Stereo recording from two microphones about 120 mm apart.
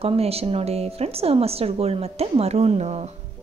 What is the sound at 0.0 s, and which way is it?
A woman's voice, 55° right (ahead or behind).